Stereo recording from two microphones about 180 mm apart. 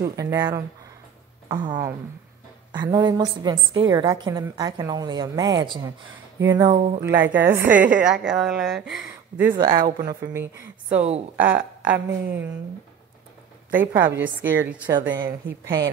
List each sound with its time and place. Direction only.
0.0 s a woman's voice: 15° right (ahead or behind)
11.0 s a woman's voice: 35° right (ahead or behind)
11.3 s a woman's voice: 10° right (ahead or behind)
13.7 s a woman's voice: 10° right (ahead or behind)